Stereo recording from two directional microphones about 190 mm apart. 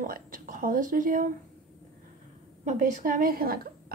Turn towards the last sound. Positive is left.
turn(degrees=-50)  # may be behind; listen again after turning